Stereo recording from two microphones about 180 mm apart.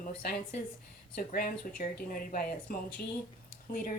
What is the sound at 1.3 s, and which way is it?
Speech, 50° left (ahead or behind).